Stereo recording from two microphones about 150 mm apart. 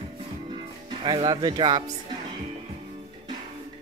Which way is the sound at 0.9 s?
30° right (ahead or behind).